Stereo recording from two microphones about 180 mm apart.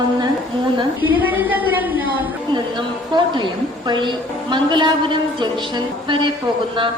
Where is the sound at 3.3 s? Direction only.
25° right (ahead or behind).